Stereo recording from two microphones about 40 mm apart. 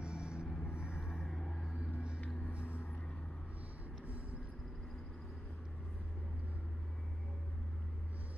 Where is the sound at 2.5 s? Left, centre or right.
Left.